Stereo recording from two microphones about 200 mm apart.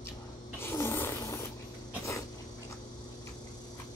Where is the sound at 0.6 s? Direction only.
10° left (ahead or behind).